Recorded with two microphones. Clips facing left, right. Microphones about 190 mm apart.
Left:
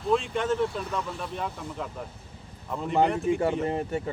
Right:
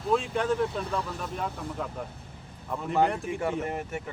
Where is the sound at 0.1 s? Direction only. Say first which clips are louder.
Left 1 dB; centre (ahead or behind).